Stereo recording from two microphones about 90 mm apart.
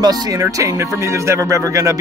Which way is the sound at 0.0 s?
40° right (ahead or behind).